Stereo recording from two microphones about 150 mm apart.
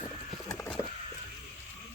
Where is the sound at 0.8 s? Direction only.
25° left (ahead or behind).